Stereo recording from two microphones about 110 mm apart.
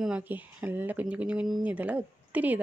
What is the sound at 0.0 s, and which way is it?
Speech, 10° right (ahead or behind).